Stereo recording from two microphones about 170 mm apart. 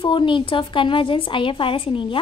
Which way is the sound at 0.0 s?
30° left (ahead or behind).